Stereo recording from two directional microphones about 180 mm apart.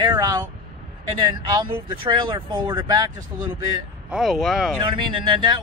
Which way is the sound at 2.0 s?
25° right (ahead or behind).